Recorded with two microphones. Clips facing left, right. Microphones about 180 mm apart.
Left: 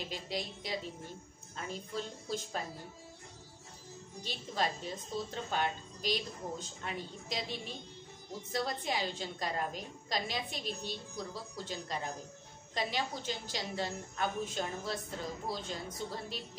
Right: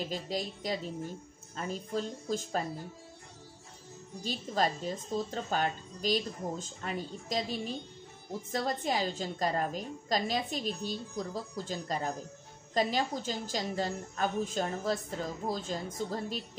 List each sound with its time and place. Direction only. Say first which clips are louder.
0.1 s a woman's voice: right 4 dB; 45° right (ahead or behind)
4.2 s a woman's voice: right 5 dB; 45° right (ahead or behind)